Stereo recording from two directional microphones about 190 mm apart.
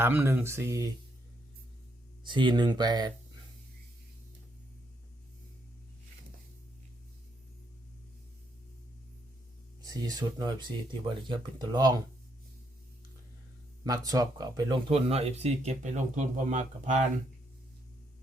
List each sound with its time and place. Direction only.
0.0 s speech: 10° right (ahead or behind)
2.2 s speech: 25° right (ahead or behind)
9.8 s speech: 20° right (ahead or behind)
13.8 s speech: 20° right (ahead or behind); by 17.1 s 40° right (ahead or behind)